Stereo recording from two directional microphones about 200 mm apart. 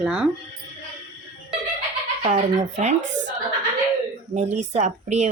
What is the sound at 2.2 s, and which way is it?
Speech, 35° right (ahead or behind).